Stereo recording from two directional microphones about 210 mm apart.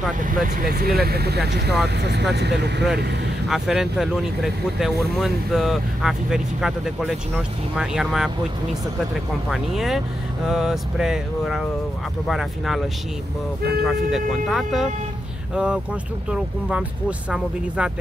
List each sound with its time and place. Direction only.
0.2 s speech: 40° right (ahead or behind)
3.4 s speech: centre (ahead or behind)
9.5 s speech: centre (ahead or behind)
13.6 s speech: 50° right (ahead or behind)
13.8 s speech: centre (ahead or behind)